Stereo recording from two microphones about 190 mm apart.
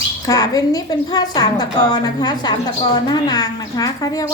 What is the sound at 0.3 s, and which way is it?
A woman's voice, 20° left (ahead or behind).